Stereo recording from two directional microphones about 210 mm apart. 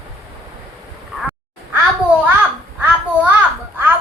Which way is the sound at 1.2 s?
10° right (ahead or behind).